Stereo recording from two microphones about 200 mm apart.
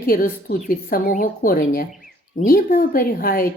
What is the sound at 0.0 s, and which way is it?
A woman's voice, 45° left (ahead or behind).